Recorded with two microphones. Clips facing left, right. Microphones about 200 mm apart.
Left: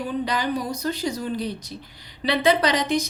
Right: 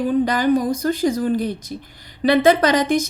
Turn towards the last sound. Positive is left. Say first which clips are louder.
# right 5 dB
turn(degrees=-50)  # may be behind; listen again after turning